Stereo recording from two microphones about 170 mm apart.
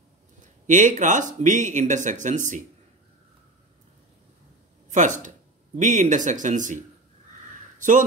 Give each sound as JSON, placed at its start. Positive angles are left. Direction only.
{"t": 0.7, "sound": "speech", "side_deg": -45}
{"t": 4.9, "sound": "speech", "side_deg": -45}